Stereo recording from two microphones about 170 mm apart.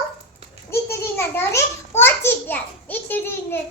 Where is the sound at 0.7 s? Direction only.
15° left (ahead or behind).